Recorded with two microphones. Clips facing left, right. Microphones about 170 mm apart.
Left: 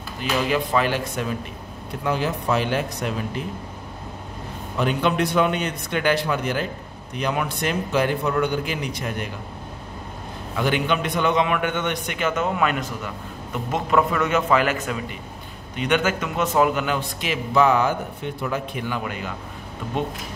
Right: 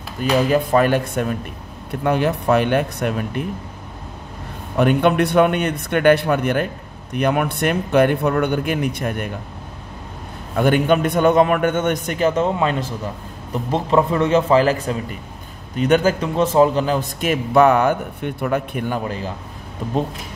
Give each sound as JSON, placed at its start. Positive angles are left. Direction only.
{"t": 0.2, "sound": "speech", "side_deg": -45}
{"t": 4.7, "sound": "speech", "side_deg": -55}
{"t": 10.5, "sound": "a man's voice", "side_deg": -50}
{"t": 17.2, "sound": "speech", "side_deg": -50}
{"t": 19.0, "sound": "a man's voice", "side_deg": -35}